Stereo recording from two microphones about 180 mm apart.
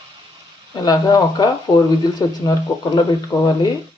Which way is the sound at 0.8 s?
20° left (ahead or behind).